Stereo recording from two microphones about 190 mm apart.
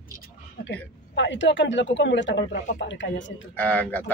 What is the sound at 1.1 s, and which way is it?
Speech, 70° left (ahead or behind).